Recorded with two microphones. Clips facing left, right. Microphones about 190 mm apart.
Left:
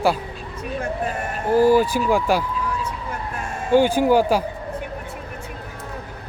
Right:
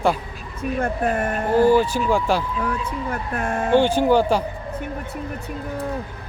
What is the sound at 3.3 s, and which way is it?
Speech, 60° right (ahead or behind).